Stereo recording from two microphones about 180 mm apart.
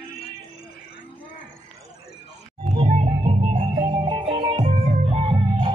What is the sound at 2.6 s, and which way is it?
Music, 30° right (ahead or behind).